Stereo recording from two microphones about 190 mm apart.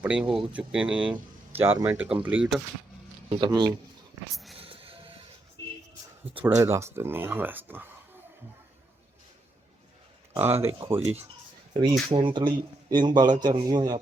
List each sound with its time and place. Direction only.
0.0 s speech: 5° right (ahead or behind)
3.2 s a man's voice: 25° right (ahead or behind)
4.5 s music: 30° right (ahead or behind)
6.4 s speech: 15° right (ahead or behind)
10.3 s speech: 10° right (ahead or behind)
11.7 s a man's voice: 30° right (ahead or behind)